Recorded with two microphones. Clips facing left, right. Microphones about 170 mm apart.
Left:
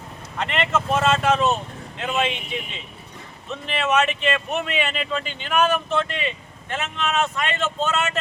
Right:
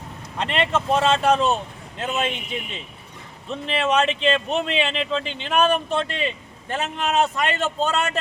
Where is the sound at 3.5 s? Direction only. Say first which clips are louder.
Right 1 dB; 30° right (ahead or behind).